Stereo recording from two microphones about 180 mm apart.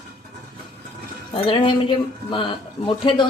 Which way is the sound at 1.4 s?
30° left (ahead or behind).